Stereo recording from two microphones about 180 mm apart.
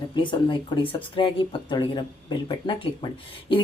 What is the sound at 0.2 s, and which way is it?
Speech, 25° left (ahead or behind).